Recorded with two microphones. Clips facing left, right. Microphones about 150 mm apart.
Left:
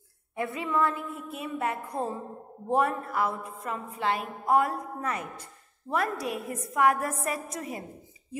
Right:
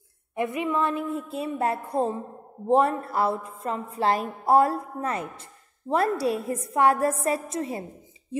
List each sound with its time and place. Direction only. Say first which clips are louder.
0.4 s a woman's voice: right 2 dB; 20° right (ahead or behind)